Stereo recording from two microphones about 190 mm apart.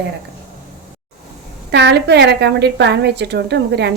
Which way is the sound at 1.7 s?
65° right (ahead or behind).